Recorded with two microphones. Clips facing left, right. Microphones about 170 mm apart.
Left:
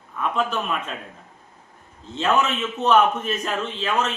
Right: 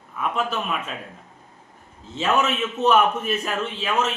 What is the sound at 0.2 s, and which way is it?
Speech, 5° right (ahead or behind).